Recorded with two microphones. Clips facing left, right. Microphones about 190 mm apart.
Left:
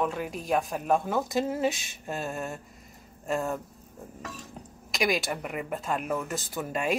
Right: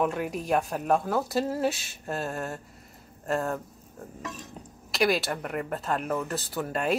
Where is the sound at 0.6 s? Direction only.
5° left (ahead or behind).